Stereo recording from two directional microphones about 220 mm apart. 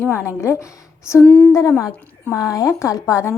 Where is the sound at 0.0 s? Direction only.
10° left (ahead or behind).